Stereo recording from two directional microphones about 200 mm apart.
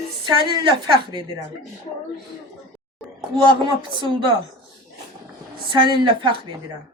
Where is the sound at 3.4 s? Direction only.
25° right (ahead or behind).